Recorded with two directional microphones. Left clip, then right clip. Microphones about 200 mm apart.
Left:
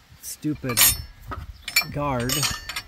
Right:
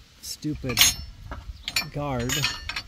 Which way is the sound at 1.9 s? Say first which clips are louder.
Left 4 dB; 15° left (ahead or behind).